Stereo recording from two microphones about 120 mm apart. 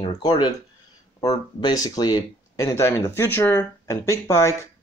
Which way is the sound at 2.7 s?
20° left (ahead or behind).